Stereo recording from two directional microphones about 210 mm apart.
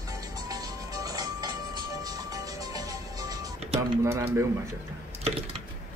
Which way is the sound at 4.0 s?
15° right (ahead or behind).